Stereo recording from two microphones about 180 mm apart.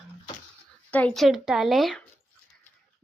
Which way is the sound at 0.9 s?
5° left (ahead or behind).